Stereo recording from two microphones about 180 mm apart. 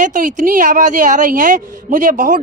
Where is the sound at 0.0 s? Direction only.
45° right (ahead or behind).